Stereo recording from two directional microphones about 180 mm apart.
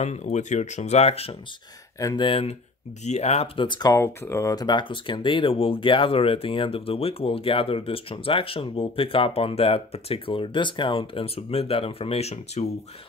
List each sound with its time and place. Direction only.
0.0 s speech: 40° left (ahead or behind)
2.0 s speech: 20° left (ahead or behind)